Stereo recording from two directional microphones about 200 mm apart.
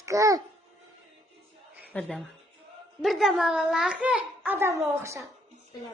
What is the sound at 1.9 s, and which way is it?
A child's voice, 5° left (ahead or behind).